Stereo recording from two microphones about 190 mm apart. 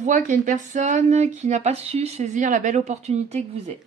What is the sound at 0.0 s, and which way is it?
Speech, 40° right (ahead or behind).